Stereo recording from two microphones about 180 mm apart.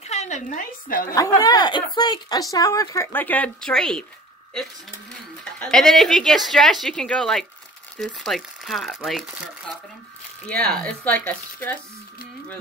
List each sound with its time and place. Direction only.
0.0 s a woman's voice: 40° left (ahead or behind)
1.1 s a woman's voice: 20° left (ahead or behind); by 4.0 s 5° left (ahead or behind)
5.4 s a woman's voice: 5° left (ahead or behind)